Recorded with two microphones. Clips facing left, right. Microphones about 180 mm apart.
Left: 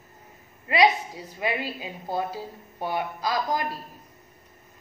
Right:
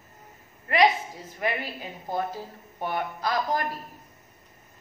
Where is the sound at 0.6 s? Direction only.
15° left (ahead or behind).